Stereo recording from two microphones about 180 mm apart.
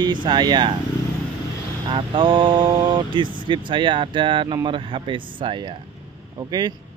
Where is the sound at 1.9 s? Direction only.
25° right (ahead or behind).